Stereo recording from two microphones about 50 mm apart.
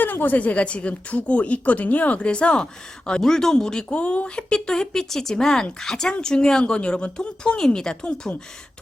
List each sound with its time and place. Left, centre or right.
0.0 s a woman's voice: left; by 3.8 s centre
3.8 s speech: left